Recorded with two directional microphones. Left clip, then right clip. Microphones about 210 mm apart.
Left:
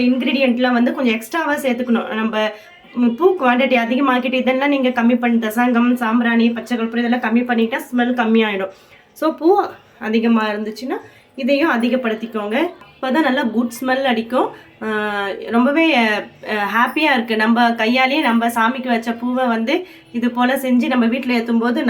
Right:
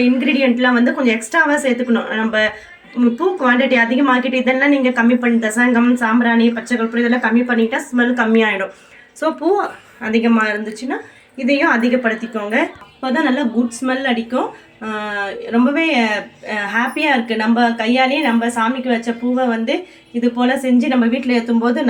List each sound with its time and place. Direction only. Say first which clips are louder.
0.3 s a woman's voice: even; 15° left (ahead or behind)